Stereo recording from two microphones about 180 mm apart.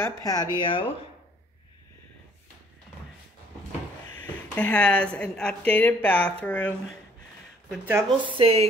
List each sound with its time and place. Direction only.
0.0 s speech: 20° left (ahead or behind)
4.2 s speech: 10° left (ahead or behind)
7.8 s speech: 10° right (ahead or behind)
8.4 s a sound: 35° right (ahead or behind)